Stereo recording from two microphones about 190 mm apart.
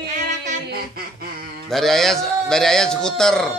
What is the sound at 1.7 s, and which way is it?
A man's voice, centre (ahead or behind).